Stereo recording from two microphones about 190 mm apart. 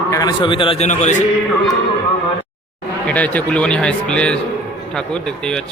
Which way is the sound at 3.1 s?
10° left (ahead or behind).